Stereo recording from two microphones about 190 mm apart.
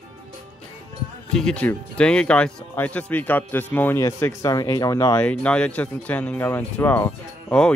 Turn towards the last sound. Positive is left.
turn(degrees=10)  # may be behind; listen again after turning